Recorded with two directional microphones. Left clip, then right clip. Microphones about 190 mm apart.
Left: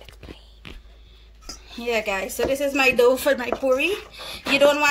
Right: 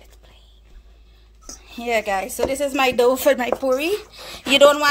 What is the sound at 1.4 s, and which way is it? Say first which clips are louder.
A woman's voice: right 1 dB; 35° right (ahead or behind).